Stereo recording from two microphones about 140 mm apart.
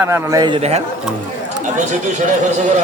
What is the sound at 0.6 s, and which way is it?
Speech, 50° right (ahead or behind).